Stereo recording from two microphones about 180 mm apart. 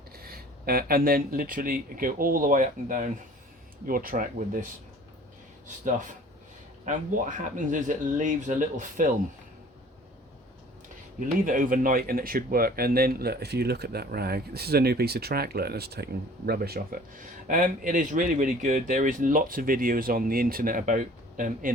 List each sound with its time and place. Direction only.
0.2 s speech: 55° right (ahead or behind)
11.2 s speech: 45° right (ahead or behind)